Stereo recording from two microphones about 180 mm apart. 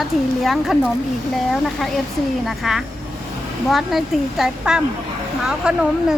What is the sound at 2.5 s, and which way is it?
Speech, centre (ahead or behind).